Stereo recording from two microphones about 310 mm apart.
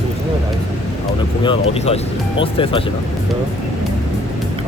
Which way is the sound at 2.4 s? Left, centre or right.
Centre.